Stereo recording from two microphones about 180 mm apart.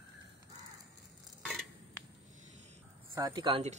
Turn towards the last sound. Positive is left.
turn(degrees=-25)  # may be behind; listen again after turning